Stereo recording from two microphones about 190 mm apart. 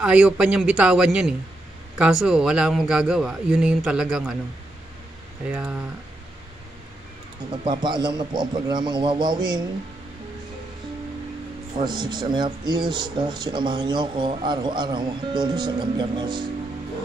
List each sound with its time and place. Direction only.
0.0 s speech: 5° right (ahead or behind)
5.5 s speech: 5° right (ahead or behind)
7.6 s speech: 25° right (ahead or behind)
11.8 s speech: 25° right (ahead or behind)